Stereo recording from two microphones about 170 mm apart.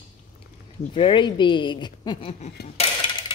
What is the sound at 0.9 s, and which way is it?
A woman's voice, 30° left (ahead or behind).